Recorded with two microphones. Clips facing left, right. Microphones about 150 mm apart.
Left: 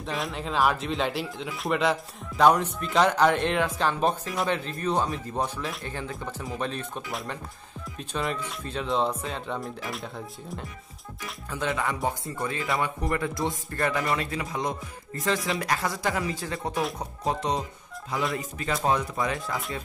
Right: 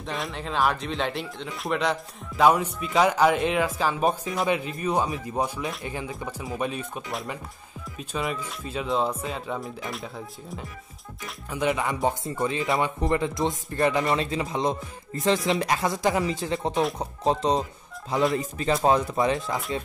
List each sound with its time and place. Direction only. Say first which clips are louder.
0.0 s speech: left 1 dB; centre (ahead or behind)
11.5 s speech: right 3 dB; 15° right (ahead or behind)